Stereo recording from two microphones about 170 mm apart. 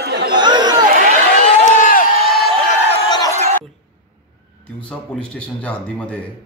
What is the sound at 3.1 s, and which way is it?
Crowd, 25° left (ahead or behind).